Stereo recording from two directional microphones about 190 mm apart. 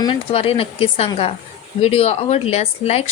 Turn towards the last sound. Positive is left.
turn(degrees=35)  # may be behind; listen again after turning